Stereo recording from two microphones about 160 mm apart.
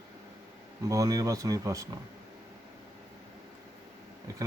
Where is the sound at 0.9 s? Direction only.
20° right (ahead or behind).